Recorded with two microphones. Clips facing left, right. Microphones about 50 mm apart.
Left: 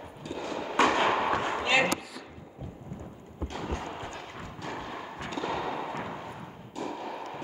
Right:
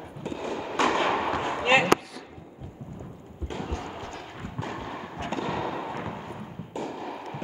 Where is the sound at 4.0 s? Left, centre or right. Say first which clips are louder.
Right 1 dB; centre.